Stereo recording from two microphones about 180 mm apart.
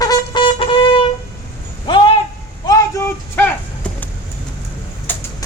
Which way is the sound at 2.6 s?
15° left (ahead or behind).